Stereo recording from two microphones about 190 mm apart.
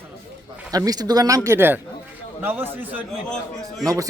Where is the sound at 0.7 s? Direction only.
20° right (ahead or behind).